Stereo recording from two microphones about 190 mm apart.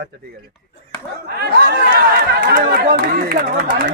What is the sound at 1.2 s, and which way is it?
Speech, 50° right (ahead or behind).